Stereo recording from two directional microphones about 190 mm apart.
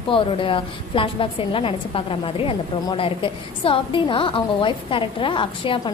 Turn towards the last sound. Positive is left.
turn(degrees=25)  # may be behind; listen again after turning